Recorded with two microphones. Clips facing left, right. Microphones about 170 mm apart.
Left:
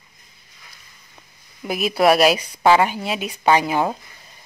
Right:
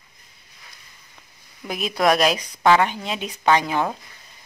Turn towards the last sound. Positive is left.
turn(degrees=10)  # may be behind; listen again after turning